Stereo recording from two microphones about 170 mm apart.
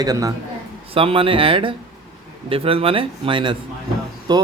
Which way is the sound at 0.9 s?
35° right (ahead or behind).